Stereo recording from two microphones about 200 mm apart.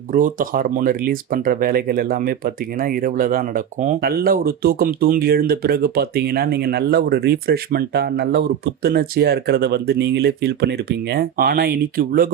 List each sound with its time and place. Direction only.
0.1 s speech: 40° right (ahead or behind)